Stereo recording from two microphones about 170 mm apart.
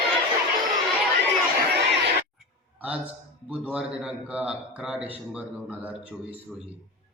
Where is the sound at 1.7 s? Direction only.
85° right.